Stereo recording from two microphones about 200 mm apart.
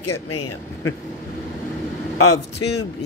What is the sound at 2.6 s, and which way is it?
Speech, 60° left (ahead or behind).